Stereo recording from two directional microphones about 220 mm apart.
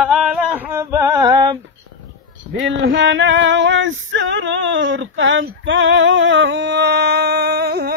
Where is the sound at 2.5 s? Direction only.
60° right (ahead or behind).